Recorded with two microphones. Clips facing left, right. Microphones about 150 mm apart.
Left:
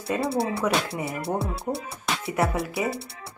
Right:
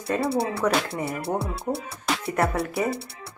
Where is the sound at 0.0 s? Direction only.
5° left (ahead or behind).